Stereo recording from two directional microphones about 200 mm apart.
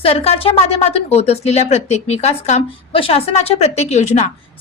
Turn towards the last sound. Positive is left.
turn(degrees=35)  # may be behind; listen again after turning